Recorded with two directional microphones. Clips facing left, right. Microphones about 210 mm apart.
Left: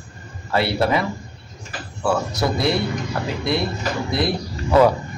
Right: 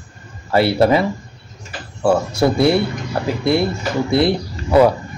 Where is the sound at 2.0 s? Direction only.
25° right (ahead or behind).